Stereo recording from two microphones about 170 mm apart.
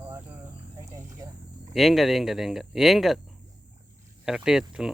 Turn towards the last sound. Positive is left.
turn(degrees=-5)  # may be behind; listen again after turning